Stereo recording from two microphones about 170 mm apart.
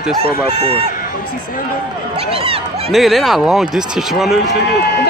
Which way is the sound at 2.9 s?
Centre (ahead or behind).